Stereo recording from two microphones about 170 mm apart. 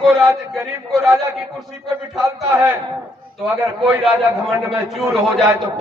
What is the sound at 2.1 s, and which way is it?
Speech, 15° right (ahead or behind).